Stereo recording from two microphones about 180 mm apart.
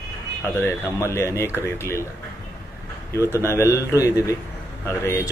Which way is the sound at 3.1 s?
15° left (ahead or behind).